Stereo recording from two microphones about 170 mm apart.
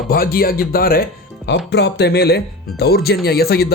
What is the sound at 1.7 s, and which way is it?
Speech, 85° left.